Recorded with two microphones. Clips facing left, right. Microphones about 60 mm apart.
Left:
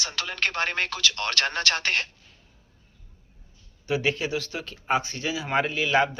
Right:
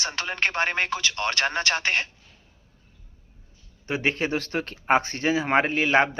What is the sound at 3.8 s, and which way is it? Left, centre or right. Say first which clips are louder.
Speech: even; right.